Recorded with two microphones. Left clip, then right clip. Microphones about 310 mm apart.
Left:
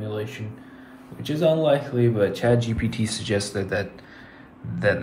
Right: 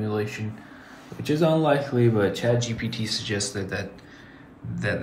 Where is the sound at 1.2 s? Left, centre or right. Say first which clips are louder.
Left 1 dB; centre.